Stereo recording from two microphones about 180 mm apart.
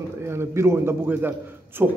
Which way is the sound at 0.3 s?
15° right (ahead or behind).